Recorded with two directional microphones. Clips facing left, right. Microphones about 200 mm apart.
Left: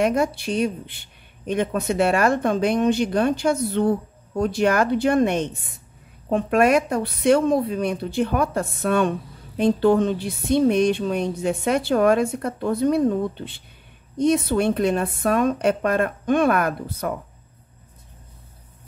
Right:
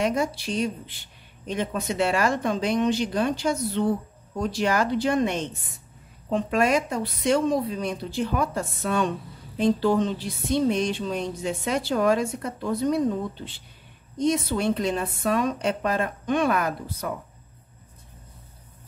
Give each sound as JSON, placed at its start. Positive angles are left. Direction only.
{"t": 0.0, "sound": "speech", "side_deg": 60}